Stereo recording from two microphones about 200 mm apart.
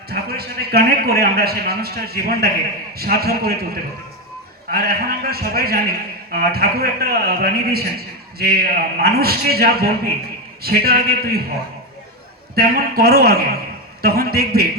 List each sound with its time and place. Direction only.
0.1 s a man's voice: 50° right (ahead or behind)
12.5 s a man's voice: 50° right (ahead or behind)